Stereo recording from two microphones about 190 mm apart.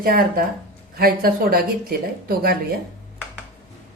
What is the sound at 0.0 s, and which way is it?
Speech, 50° right (ahead or behind).